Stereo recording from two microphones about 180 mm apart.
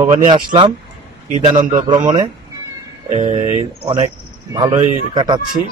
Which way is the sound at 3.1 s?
35° right (ahead or behind).